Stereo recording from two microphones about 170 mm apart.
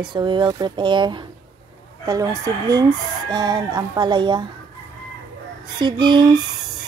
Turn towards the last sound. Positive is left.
turn(degrees=-25)  # may be behind; listen again after turning